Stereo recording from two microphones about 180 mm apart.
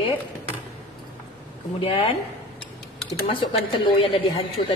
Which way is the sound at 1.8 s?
30° left (ahead or behind).